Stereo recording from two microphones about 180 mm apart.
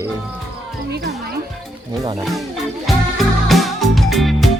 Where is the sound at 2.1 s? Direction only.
Centre (ahead or behind).